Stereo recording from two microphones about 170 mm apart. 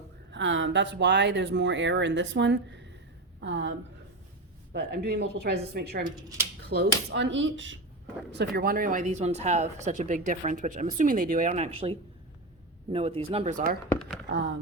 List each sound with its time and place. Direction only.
0.3 s speech: 90° right
4.7 s speech: 70° right (ahead or behind)
6.1 s speech: 20° right (ahead or behind)
6.7 s speech: 80° right
8.5 s speech: 60° right (ahead or behind)
14.3 s speech: 90° right